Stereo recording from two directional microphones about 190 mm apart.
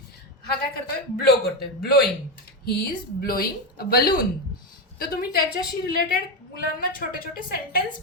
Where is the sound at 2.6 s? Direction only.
55° left (ahead or behind).